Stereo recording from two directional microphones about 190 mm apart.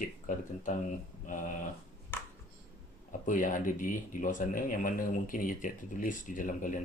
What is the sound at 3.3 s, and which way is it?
A man's voice, 45° left (ahead or behind).